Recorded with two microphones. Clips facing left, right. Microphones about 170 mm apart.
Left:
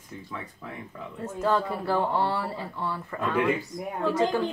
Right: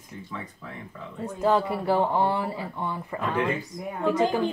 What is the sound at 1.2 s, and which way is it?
Speech, 15° right (ahead or behind).